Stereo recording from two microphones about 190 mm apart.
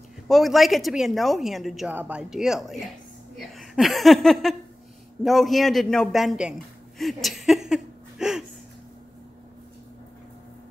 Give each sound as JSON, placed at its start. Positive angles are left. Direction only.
{"t": 0.3, "sound": "a woman's voice", "side_deg": 0}